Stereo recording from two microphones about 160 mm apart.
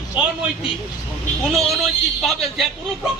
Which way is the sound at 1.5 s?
Centre (ahead or behind).